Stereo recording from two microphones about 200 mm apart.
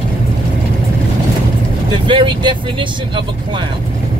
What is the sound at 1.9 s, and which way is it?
Speech, 25° right (ahead or behind).